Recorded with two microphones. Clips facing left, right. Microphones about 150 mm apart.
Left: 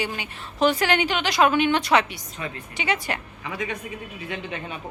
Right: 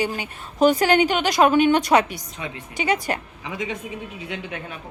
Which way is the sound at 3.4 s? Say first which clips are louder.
Even; 20° right (ahead or behind).